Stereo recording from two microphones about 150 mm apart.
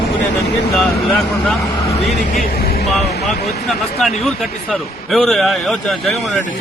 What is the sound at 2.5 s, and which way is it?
Speech, 90° left.